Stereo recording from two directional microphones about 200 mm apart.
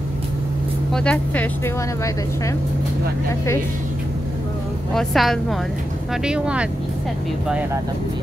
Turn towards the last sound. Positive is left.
turn(degrees=-5)  # may be behind; listen again after turning